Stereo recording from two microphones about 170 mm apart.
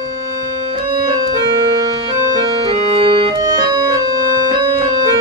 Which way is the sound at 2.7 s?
35° right (ahead or behind).